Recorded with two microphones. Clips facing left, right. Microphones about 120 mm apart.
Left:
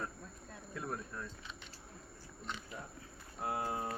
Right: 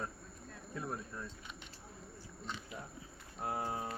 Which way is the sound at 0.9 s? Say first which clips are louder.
Left 2 dB; 10° right (ahead or behind).